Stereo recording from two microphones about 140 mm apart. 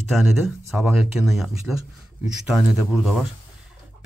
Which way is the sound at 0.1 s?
Centre (ahead or behind).